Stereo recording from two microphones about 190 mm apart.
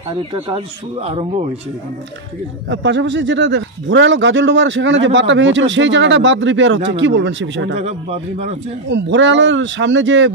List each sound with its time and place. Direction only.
1.0 s a man's voice: 30° right (ahead or behind)
2.7 s a man's voice: 70° right (ahead or behind)
7.7 s a man's voice: 35° right (ahead or behind)
8.9 s a man's voice: 75° right (ahead or behind)